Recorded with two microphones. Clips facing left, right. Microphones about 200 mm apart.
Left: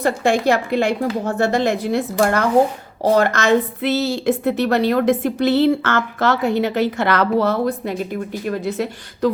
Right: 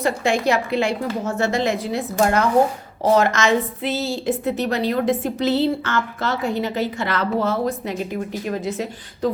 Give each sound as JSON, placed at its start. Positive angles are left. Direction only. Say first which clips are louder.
{"t": 0.0, "sound": "a woman's voice", "louder": "left 3 dB", "side_deg": 55}